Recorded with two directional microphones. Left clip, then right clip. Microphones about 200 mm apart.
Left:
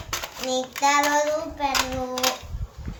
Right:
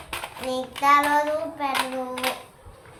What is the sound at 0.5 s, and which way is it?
Child singing, 5° left (ahead or behind).